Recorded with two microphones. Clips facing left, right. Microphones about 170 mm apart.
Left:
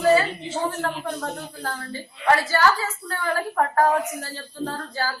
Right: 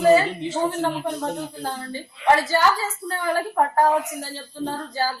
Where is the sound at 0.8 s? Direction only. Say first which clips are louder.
Right 3 dB; 20° right (ahead or behind).